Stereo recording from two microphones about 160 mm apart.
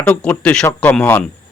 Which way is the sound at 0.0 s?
5° left (ahead or behind).